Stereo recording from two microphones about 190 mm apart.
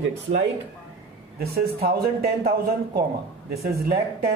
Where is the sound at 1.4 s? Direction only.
55° right (ahead or behind).